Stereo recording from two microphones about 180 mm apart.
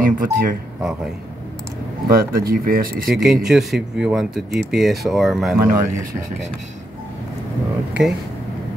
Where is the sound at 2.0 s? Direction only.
55° right (ahead or behind).